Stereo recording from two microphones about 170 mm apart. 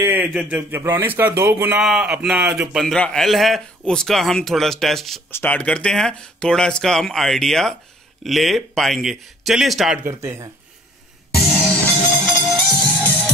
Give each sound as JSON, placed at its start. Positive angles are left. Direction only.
{"t": 0.0, "sound": "speech", "side_deg": -10}
{"t": 1.8, "sound": "a man's voice", "side_deg": -5}
{"t": 10.0, "sound": "speech", "side_deg": -15}
{"t": 12.0, "sound": "music", "side_deg": 5}